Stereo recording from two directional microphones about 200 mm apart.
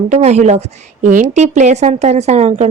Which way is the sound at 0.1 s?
35° right (ahead or behind).